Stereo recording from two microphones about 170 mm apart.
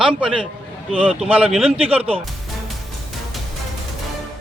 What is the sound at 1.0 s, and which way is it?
Speech, 5° left (ahead or behind).